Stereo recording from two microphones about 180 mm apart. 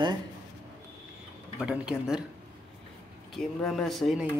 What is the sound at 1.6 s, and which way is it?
Speech, 5° right (ahead or behind).